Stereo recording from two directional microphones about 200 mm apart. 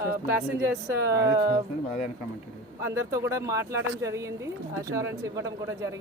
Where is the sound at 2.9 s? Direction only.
15° right (ahead or behind).